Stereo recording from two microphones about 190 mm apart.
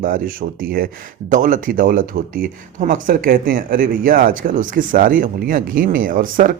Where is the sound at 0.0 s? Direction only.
45° right (ahead or behind).